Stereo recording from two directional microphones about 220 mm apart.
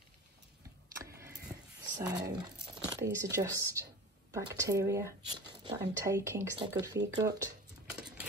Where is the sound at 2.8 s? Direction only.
10° right (ahead or behind).